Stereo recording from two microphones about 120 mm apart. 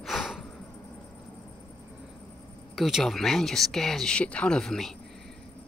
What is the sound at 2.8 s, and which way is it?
Speech, centre (ahead or behind).